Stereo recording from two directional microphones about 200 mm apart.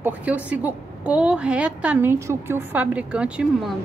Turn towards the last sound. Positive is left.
turn(degrees=-5)  # may be behind; listen again after turning